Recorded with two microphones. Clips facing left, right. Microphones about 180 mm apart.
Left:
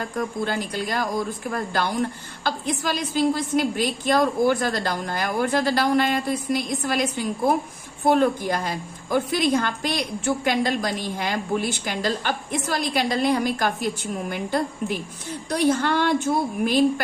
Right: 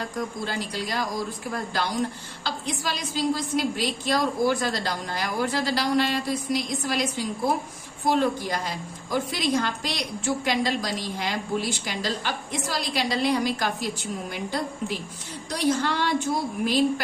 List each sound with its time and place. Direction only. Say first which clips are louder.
0.2 s a woman's voice: left 5 dB; 55° left (ahead or behind)